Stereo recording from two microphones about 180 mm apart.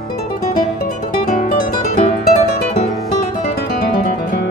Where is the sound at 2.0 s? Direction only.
35° left (ahead or behind).